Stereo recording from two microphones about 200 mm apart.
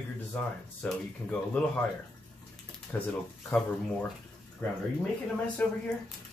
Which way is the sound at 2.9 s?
10° left (ahead or behind).